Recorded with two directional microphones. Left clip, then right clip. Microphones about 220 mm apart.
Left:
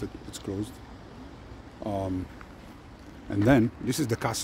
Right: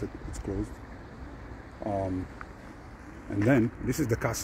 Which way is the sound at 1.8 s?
25° left (ahead or behind).